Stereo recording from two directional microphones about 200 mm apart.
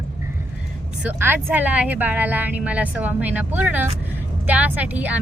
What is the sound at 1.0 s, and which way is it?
Speech, 10° right (ahead or behind).